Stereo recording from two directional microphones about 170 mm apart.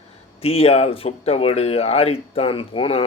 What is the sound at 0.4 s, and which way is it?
Speech, 35° left (ahead or behind).